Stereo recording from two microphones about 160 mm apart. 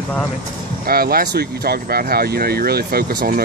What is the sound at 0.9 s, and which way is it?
Speech, 70° right (ahead or behind).